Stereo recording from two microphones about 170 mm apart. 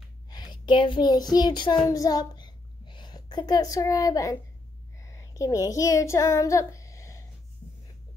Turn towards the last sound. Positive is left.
turn(degrees=20)  # may be behind; listen again after turning